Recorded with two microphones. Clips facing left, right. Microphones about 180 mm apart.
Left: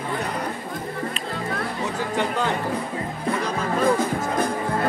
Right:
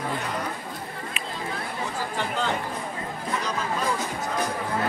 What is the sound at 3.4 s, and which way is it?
Music, 55° left (ahead or behind).